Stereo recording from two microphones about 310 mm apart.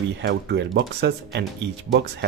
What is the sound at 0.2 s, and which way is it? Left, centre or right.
Speech, right.